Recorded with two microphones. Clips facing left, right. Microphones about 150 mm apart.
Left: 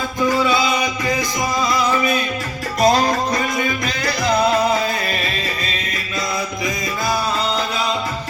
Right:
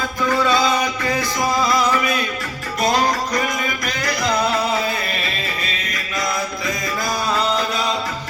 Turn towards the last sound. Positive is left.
turn(degrees=25)  # may be behind; listen again after turning